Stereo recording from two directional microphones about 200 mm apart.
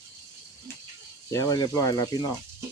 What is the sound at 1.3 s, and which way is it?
Speech, 20° left (ahead or behind).